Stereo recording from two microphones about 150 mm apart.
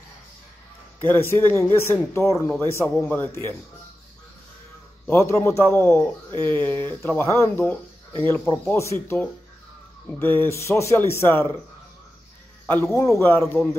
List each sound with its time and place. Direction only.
1.0 s speech: 15° left (ahead or behind)
5.0 s speech: 15° left (ahead or behind)
12.6 s speech: 15° left (ahead or behind)